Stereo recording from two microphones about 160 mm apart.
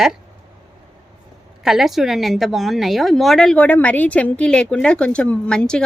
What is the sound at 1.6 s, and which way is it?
A woman's voice, centre (ahead or behind).